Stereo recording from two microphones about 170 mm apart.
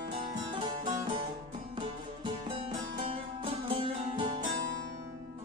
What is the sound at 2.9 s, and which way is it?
Music, 30° right (ahead or behind).